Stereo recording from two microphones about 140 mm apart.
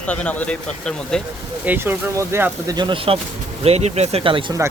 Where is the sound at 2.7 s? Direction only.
35° right (ahead or behind).